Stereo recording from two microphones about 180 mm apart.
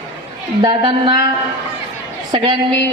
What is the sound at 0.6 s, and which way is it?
Speech, 25° right (ahead or behind).